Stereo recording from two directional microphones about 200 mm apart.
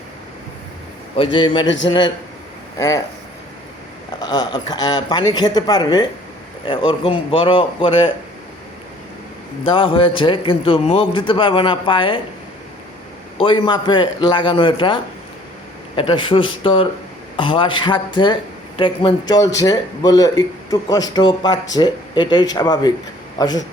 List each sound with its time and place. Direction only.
1.1 s a man's voice: 25° left (ahead or behind)
1.6 s a man's voice: 65° left (ahead or behind)
1.9 s a man's voice: 20° left (ahead or behind)
4.2 s a man's voice: 20° left (ahead or behind)
9.6 s a man's voice: 25° left (ahead or behind)
13.4 s a man's voice: 25° left (ahead or behind)